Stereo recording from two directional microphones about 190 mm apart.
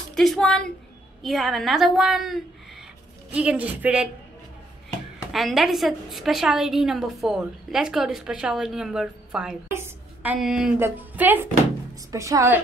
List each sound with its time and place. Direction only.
0.1 s a woman's voice: centre (ahead or behind)
5.3 s a woman's voice: centre (ahead or behind)